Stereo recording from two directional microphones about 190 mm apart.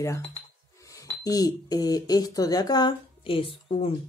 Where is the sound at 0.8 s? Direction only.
15° left (ahead or behind).